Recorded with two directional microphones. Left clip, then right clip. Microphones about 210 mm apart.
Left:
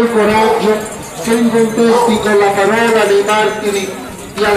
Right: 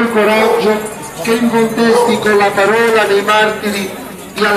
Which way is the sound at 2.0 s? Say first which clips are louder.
Even; 35° right (ahead or behind).